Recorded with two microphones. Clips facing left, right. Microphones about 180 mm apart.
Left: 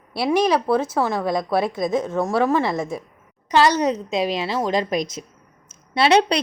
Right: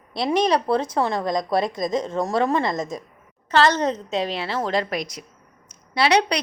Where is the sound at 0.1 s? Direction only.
5° left (ahead or behind).